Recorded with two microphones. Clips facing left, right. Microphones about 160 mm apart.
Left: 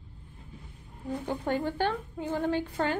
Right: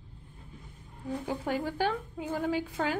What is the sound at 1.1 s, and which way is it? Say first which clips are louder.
A woman's voice: left 2 dB; centre (ahead or behind).